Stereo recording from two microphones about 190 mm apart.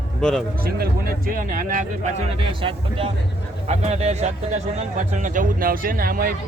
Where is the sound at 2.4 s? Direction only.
30° right (ahead or behind).